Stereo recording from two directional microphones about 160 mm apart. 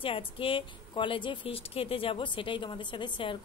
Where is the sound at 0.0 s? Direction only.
35° left (ahead or behind).